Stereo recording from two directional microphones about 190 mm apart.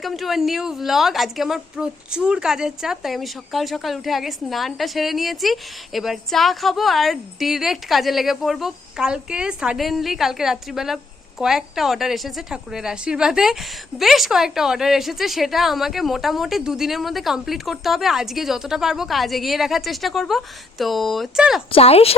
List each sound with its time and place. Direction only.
0.0 s a woman's voice: centre (ahead or behind)
21.7 s speech: 30° left (ahead or behind)